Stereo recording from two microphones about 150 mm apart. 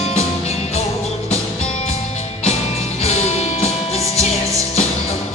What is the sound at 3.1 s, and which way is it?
Music, 45° left (ahead or behind).